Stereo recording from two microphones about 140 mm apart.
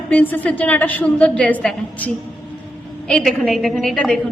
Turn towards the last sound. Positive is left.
turn(degrees=5)  # may be behind; listen again after turning